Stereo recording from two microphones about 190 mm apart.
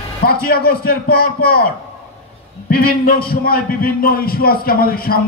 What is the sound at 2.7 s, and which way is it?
A man's voice, 50° left (ahead or behind).